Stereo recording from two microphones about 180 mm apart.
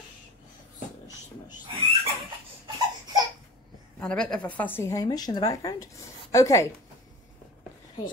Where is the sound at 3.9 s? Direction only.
5° left (ahead or behind).